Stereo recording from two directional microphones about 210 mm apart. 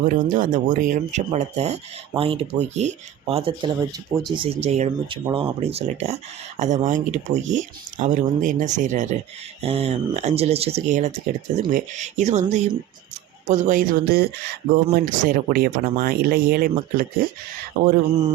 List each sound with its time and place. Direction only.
0.1 s speech: 40° right (ahead or behind)